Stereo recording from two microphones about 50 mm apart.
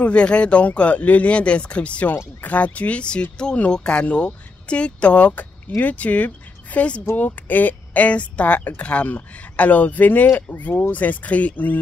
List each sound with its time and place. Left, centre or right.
0.0 s speech: left